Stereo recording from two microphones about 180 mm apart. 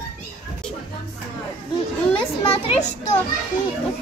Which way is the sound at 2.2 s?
30° left (ahead or behind).